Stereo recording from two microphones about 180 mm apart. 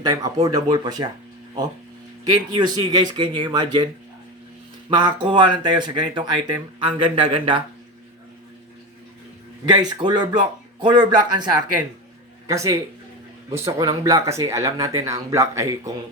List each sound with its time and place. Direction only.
0.0 s speech: 20° right (ahead or behind)
2.3 s speech: 25° right (ahead or behind)
4.9 s speech: 25° right (ahead or behind)
9.6 s speech: 25° right (ahead or behind)
12.5 s speech: 20° right (ahead or behind)
13.7 s speech: 20° right (ahead or behind)